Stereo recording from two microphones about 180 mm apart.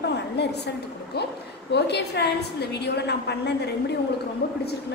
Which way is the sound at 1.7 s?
65° left (ahead or behind).